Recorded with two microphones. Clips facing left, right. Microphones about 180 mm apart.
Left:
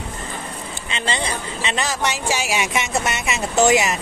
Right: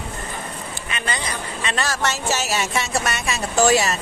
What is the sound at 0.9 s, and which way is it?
Speech, 25° left (ahead or behind).